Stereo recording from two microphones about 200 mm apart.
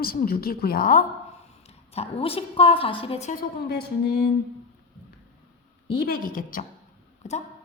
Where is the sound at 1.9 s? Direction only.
30° left (ahead or behind).